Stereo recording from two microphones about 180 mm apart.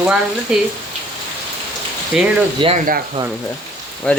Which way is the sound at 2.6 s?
25° right (ahead or behind).